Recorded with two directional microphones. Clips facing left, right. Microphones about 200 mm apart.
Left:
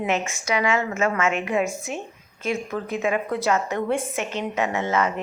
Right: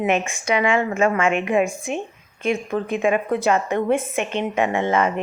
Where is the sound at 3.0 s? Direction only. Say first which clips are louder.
Right 3 dB; 25° right (ahead or behind).